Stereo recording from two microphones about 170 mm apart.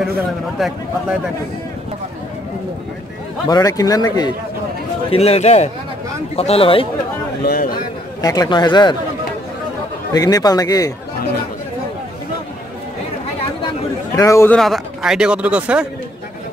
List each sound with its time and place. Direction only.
0.6 s speech: centre (ahead or behind)
3.4 s a man's voice: 20° left (ahead or behind)
5.1 s speech: 35° left (ahead or behind)
7.4 s speech: 60° left (ahead or behind)
8.2 s a man's voice: 20° left (ahead or behind)
10.1 s a man's voice: 20° left (ahead or behind)
14.1 s a man's voice: 20° left (ahead or behind)
14.5 s speech: centre (ahead or behind)